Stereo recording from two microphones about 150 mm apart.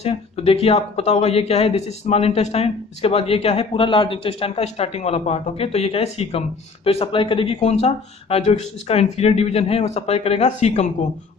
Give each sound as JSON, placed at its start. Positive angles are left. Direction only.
{"t": 0.0, "sound": "speech", "side_deg": 40}